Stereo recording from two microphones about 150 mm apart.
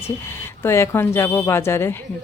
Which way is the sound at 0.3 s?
15° left (ahead or behind).